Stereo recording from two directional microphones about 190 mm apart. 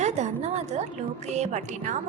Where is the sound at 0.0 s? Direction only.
35° right (ahead or behind).